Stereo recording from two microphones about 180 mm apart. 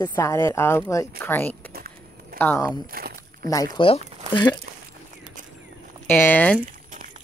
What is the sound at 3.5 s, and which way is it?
Speech, 20° left (ahead or behind).